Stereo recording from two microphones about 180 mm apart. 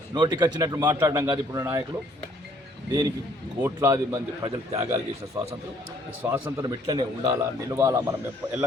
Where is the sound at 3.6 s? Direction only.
15° right (ahead or behind).